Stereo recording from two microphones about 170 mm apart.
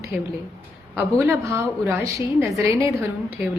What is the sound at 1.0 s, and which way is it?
A woman's voice, 15° right (ahead or behind).